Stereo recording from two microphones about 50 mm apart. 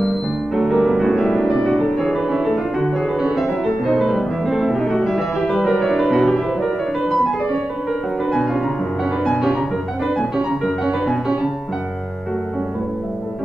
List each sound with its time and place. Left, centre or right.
0.6 s music: centre
9.2 s music: centre